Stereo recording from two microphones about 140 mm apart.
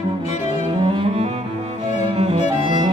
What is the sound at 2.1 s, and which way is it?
Violin, 40° right (ahead or behind).